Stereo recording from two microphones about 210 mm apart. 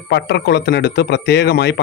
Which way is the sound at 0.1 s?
55° left (ahead or behind).